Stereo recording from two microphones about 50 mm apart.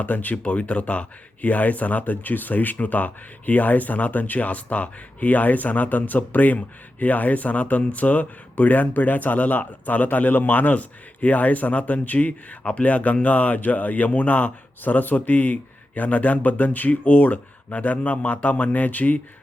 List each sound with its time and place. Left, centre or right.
0.0 s speech: left